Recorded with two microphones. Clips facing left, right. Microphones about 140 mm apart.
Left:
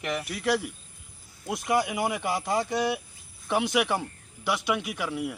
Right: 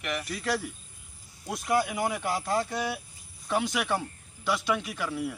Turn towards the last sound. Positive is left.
turn(degrees=10)  # may be behind; listen again after turning